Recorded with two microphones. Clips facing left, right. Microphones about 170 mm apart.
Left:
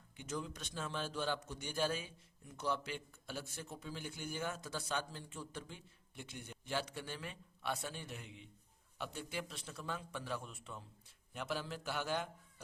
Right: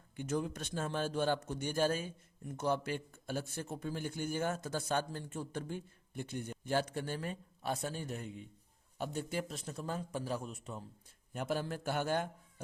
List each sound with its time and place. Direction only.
0.2 s a man's voice: 50° right (ahead or behind)